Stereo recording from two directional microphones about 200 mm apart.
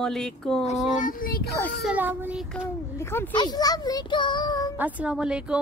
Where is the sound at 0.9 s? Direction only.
45° left (ahead or behind).